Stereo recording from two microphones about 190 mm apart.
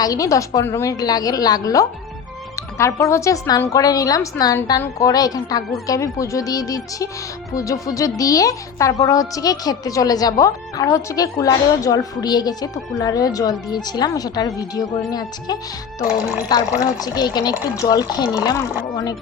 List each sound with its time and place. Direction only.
0.0 s speech: 20° left (ahead or behind)